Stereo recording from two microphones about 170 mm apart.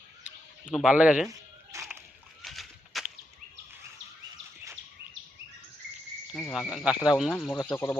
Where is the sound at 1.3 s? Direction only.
20° right (ahead or behind).